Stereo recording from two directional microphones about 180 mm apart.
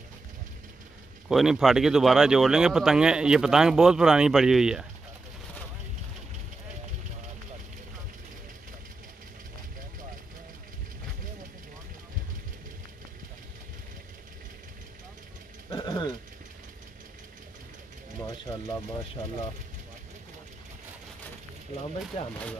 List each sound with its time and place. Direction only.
1.3 s speech: centre (ahead or behind)
15.7 s a sound: 20° left (ahead or behind)
22.2 s speech: 35° left (ahead or behind)